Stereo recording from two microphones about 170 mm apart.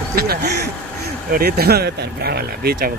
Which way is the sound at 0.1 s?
65° right (ahead or behind).